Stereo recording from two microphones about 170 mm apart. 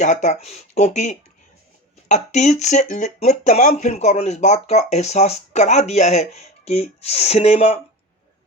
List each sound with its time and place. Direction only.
0.0 s speech: 45° left (ahead or behind)